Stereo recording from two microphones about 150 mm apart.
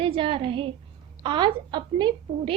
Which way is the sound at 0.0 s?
35° right (ahead or behind).